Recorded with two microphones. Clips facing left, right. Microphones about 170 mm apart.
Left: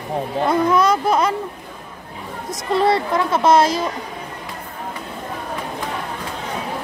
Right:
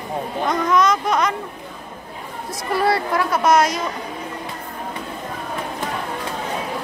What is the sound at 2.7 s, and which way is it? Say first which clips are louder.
Speech: left 2 dB; 20° left (ahead or behind).